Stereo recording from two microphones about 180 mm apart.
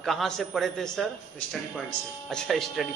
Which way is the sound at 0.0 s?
Centre (ahead or behind).